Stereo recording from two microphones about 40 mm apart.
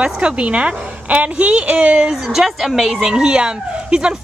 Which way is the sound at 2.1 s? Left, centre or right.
Centre.